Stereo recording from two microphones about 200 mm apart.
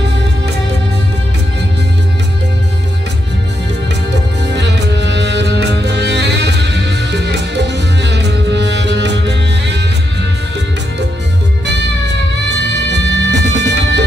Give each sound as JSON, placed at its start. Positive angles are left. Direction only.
{"t": 4.6, "sound": "music", "side_deg": -60}
{"t": 11.6, "sound": "music", "side_deg": -60}